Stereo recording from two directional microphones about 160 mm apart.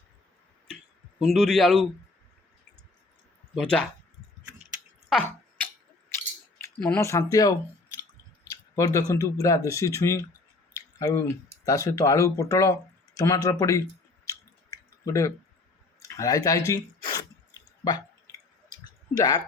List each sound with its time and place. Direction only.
1.2 s speech: centre (ahead or behind)
3.5 s speech: 5° left (ahead or behind)
5.0 s a sound: 5° left (ahead or behind)
7.0 s speech: 20° left (ahead or behind)
14.3 s chewing: 20° left (ahead or behind)
16.1 s speech: 20° left (ahead or behind)
17.8 s drip: 25° left (ahead or behind)
19.1 s speech: 25° left (ahead or behind)